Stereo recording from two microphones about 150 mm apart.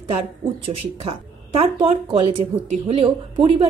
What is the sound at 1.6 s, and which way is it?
A woman's voice, 35° right (ahead or behind).